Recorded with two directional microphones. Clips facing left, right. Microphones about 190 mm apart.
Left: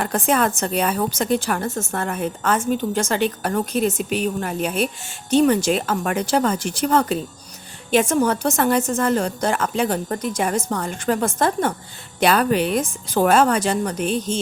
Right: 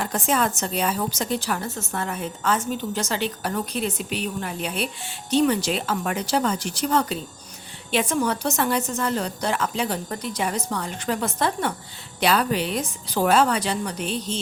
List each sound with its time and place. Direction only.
0.0 s a woman's voice: 55° left (ahead or behind)